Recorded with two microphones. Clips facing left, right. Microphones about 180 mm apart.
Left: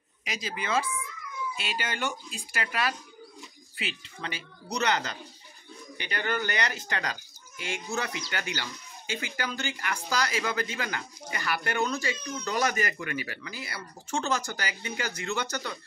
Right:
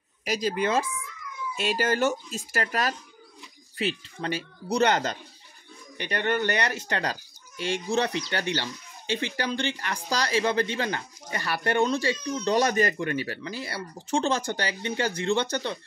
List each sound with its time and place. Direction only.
0.2 s speech: 40° right (ahead or behind)
6.2 s speech: 30° right (ahead or behind)